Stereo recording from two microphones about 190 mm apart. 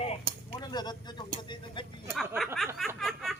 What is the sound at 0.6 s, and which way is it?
Speech, 20° left (ahead or behind).